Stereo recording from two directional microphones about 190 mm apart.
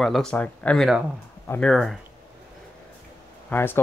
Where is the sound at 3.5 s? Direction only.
10° left (ahead or behind).